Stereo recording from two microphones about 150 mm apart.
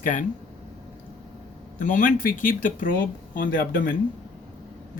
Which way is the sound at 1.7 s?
60° left (ahead or behind).